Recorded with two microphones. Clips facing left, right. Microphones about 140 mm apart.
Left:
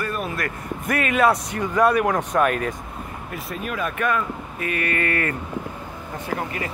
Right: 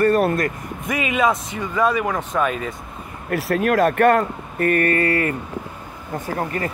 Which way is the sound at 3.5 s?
70° right (ahead or behind).